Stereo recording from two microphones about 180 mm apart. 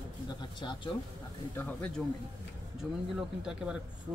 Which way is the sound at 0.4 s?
25° left (ahead or behind).